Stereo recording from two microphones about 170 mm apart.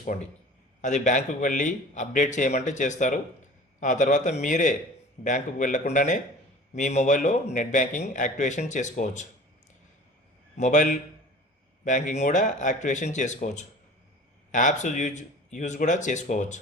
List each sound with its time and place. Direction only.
0.1 s a man's voice: 50° left (ahead or behind)
10.6 s a man's voice: 50° left (ahead or behind)